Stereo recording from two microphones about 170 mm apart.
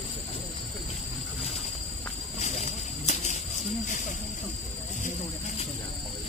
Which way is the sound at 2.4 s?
45° left (ahead or behind).